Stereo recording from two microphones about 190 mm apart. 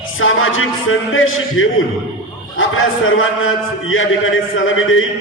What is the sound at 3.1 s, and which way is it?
A man's voice, 90° left.